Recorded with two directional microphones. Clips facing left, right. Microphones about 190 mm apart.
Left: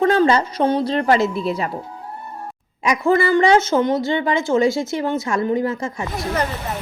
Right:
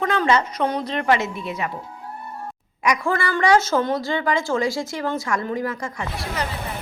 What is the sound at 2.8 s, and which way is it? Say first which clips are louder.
A woman's voice: left 5 dB; 25° left (ahead or behind).